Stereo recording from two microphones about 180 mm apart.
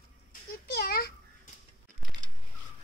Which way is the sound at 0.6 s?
60° left (ahead or behind).